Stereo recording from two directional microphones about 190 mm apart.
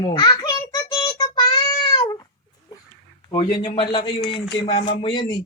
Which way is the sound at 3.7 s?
25° left (ahead or behind).